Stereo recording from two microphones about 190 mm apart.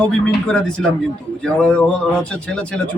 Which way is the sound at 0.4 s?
5° left (ahead or behind).